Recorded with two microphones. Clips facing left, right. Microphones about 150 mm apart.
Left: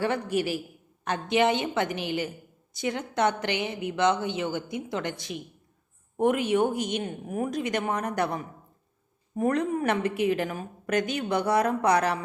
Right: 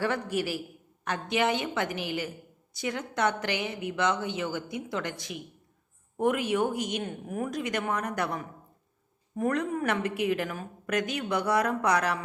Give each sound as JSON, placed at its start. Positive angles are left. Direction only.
{"t": 0.0, "sound": "a woman's voice", "side_deg": 20}